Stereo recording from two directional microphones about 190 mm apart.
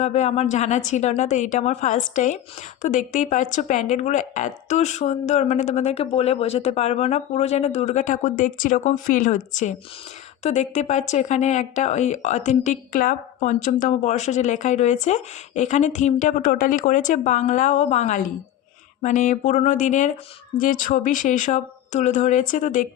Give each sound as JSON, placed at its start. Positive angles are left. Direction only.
{"t": 0.0, "sound": "speech", "side_deg": 35}